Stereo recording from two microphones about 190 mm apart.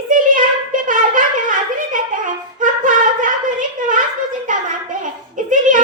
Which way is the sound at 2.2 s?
45° right (ahead or behind).